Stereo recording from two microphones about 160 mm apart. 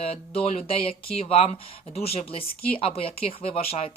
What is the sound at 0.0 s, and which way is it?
Speech, 40° left (ahead or behind).